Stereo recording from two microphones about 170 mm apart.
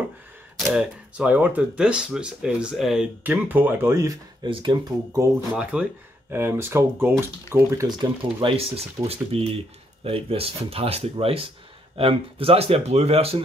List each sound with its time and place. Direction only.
0.6 s speech: centre (ahead or behind); by 4.5 s 20° right (ahead or behind)
4.5 s speech: 30° right (ahead or behind)
5.5 s speech: 5° right (ahead or behind); by 13.4 s 35° right (ahead or behind)